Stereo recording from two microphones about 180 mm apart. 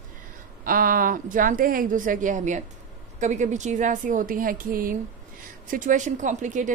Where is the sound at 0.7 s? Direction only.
50° right (ahead or behind).